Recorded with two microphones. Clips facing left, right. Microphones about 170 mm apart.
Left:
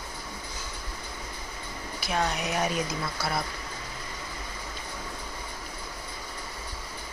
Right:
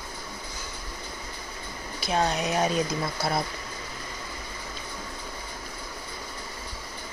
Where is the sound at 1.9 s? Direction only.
25° right (ahead or behind).